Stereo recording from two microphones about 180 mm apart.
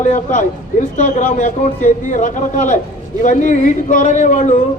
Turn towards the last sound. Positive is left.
turn(degrees=45)  # may be behind; listen again after turning